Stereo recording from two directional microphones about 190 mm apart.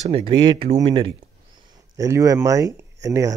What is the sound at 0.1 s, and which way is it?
Speech, 25° right (ahead or behind).